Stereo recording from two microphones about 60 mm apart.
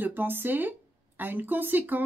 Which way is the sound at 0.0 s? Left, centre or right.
Right.